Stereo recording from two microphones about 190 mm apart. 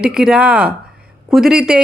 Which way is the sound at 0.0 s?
5° right (ahead or behind).